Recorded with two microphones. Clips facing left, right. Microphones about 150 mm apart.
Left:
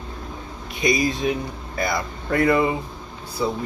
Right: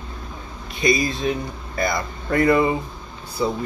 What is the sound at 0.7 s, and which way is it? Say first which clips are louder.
Speech: even; 15° left (ahead or behind).